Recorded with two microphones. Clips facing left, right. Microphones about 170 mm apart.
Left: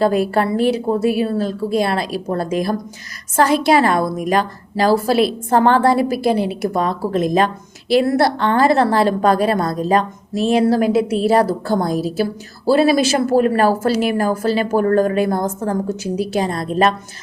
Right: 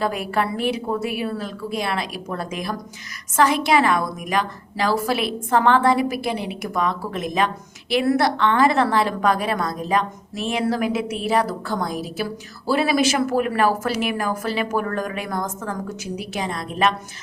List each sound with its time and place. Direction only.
0.0 s a woman's voice: 30° left (ahead or behind)